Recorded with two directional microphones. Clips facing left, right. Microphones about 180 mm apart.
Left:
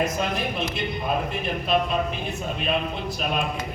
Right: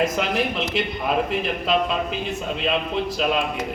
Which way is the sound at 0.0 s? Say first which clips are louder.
Right 3 dB; 90° right.